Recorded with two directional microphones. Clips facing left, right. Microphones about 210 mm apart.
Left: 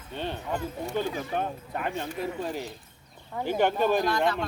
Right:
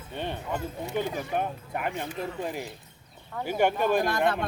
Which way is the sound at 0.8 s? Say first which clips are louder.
Even; 15° right (ahead or behind).